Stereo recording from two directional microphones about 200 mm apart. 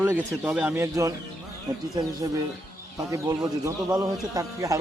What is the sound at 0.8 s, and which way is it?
Speech, 15° right (ahead or behind).